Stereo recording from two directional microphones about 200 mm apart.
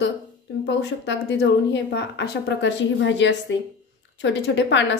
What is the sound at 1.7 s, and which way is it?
A woman's voice, 60° left (ahead or behind).